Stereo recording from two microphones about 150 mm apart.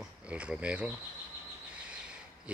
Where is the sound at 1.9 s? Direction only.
5° right (ahead or behind).